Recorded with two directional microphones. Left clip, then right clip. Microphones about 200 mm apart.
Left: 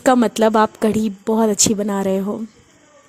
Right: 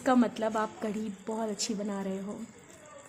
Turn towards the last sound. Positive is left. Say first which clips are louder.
# left 16 dB
turn(degrees=45)  # may be behind; listen again after turning